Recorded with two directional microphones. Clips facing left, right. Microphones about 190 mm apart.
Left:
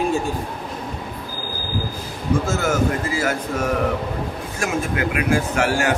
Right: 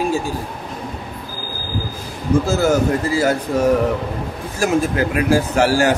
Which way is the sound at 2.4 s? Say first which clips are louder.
Right 5 dB; 35° right (ahead or behind).